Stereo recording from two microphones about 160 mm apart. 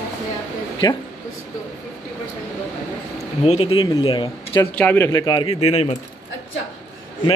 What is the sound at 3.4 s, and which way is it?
Speech, 40° left (ahead or behind).